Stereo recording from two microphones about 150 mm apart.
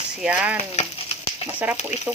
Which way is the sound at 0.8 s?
45° left (ahead or behind).